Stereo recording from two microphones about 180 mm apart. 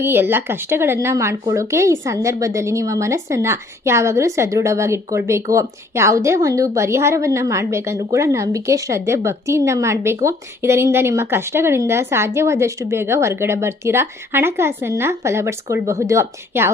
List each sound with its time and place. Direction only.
0.0 s speech: 10° right (ahead or behind)